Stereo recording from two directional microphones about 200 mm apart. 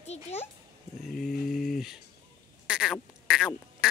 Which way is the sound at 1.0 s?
Centre (ahead or behind).